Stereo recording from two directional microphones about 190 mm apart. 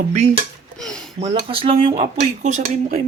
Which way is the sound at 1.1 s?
30° right (ahead or behind).